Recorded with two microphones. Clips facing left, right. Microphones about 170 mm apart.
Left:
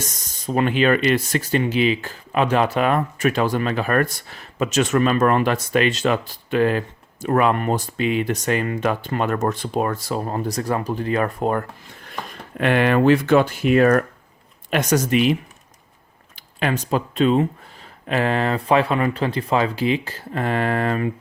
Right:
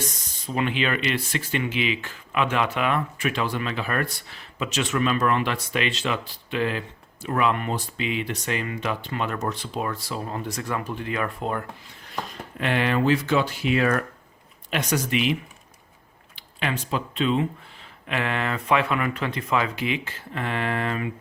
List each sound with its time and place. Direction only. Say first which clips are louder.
0.0 s speech: left 2 dB; 45° left (ahead or behind)